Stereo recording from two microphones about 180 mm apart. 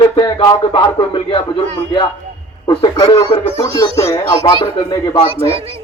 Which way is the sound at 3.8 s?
15° left (ahead or behind).